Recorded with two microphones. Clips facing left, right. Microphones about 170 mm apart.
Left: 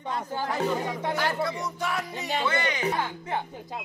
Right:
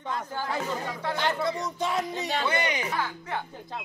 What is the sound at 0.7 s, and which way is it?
Speech, 20° left (ahead or behind).